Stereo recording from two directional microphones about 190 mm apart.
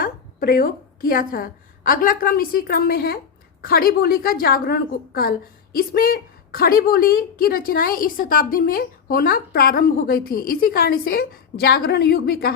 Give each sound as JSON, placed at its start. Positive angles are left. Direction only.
{"t": 0.0, "sound": "a woman's voice", "side_deg": 50}